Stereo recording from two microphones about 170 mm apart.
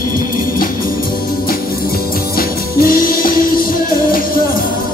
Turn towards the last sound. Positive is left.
turn(degrees=55)  # may be behind; listen again after turning